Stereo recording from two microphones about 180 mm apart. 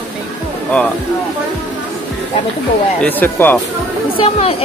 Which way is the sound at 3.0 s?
10° left (ahead or behind).